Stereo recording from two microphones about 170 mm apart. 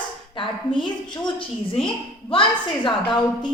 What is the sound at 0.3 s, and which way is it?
A woman's voice, 30° left (ahead or behind).